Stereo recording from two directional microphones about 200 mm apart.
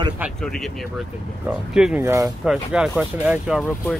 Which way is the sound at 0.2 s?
Centre (ahead or behind).